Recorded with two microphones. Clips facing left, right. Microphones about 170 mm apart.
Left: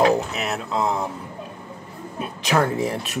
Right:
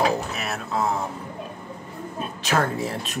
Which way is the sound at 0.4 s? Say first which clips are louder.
Left 2 dB; 20° left (ahead or behind).